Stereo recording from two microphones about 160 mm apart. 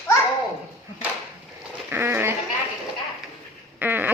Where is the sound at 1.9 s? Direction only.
15° right (ahead or behind).